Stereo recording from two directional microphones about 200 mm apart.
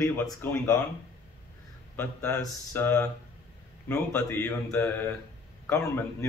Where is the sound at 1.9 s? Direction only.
10° left (ahead or behind).